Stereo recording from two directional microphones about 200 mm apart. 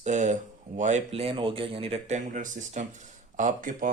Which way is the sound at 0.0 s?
35° right (ahead or behind).